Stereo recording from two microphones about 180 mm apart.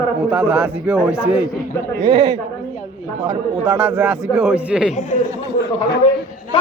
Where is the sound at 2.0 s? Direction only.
25° right (ahead or behind).